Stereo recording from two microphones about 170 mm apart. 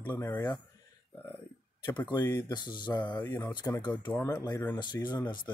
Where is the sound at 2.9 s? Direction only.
10° left (ahead or behind).